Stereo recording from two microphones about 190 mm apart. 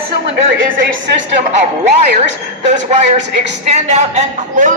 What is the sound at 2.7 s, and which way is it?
A man's voice, 35° right (ahead or behind).